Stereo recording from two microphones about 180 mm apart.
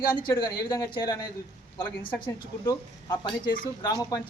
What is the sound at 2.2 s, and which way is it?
Speech, 20° left (ahead or behind).